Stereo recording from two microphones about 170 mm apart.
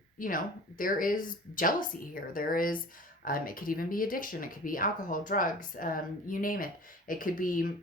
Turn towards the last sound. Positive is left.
turn(degrees=55)  # may be behind; listen again after turning